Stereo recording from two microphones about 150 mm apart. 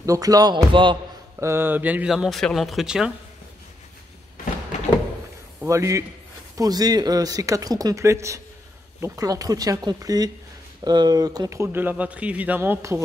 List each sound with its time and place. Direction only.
0.0 s speech: 25° right (ahead or behind)
1.4 s speech: 15° right (ahead or behind)
5.6 s speech: 20° right (ahead or behind)